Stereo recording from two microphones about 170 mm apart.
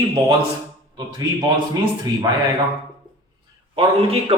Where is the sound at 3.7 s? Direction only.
35° right (ahead or behind).